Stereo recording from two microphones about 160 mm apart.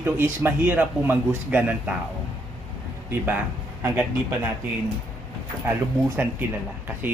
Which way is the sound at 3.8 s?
15° right (ahead or behind).